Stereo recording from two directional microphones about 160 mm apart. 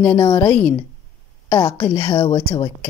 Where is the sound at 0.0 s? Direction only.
20° left (ahead or behind).